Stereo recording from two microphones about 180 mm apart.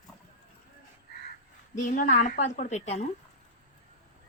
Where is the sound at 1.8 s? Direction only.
45° left (ahead or behind).